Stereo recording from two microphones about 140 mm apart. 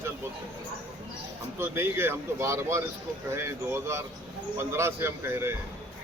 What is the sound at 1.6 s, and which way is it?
Speech, 15° right (ahead or behind).